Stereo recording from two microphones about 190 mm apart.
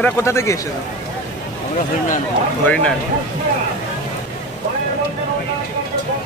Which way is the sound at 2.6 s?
5° left (ahead or behind).